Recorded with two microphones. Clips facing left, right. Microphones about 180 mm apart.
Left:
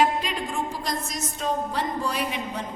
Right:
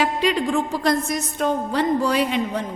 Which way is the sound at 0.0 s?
75° right (ahead or behind).